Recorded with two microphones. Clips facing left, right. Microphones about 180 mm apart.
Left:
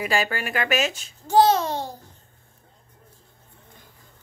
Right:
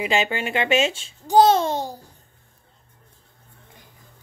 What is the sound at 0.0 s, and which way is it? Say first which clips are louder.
Speech: right 2 dB; 20° right (ahead or behind).